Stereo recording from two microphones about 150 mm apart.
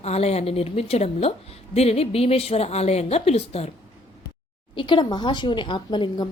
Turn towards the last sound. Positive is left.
turn(degrees=30)  # may be behind; listen again after turning